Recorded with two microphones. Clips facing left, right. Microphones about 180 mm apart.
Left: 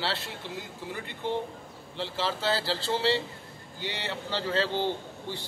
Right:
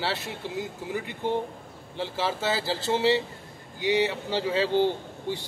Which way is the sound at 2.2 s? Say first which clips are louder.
Right 1 dB; 15° right (ahead or behind).